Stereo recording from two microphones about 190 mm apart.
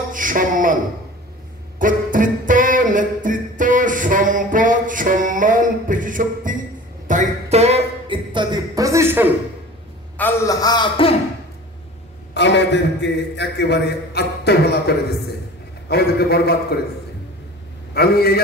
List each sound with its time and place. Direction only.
0.1 s a sound: 45° right (ahead or behind)
1.8 s music: 45° right (ahead or behind)
7.1 s a sound: 40° right (ahead or behind); by 9.3 s 10° right (ahead or behind)
10.1 s a man's voice: 15° left (ahead or behind)
12.4 s a man's voice: 65° left (ahead or behind)
17.9 s a man's voice: 55° left (ahead or behind)